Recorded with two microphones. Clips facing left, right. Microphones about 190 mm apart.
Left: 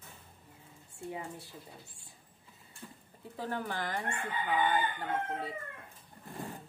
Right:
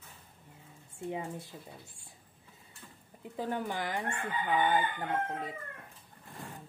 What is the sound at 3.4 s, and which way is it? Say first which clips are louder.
Speech: right 2 dB; 15° right (ahead or behind).